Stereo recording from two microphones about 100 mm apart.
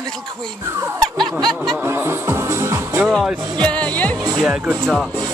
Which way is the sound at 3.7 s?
15° left (ahead or behind).